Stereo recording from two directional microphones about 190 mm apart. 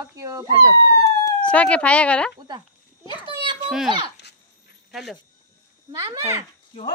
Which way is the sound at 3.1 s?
25° left (ahead or behind).